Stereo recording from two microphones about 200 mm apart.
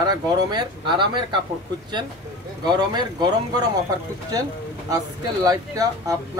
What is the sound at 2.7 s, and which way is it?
Speech, 20° right (ahead or behind).